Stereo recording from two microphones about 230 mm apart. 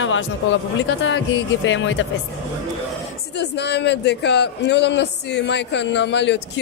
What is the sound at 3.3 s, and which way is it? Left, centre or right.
Speech, left.